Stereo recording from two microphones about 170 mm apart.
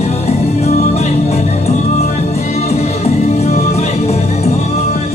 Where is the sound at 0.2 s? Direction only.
40° left (ahead or behind).